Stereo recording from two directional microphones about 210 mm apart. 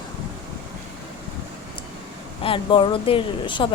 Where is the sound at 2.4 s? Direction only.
25° left (ahead or behind).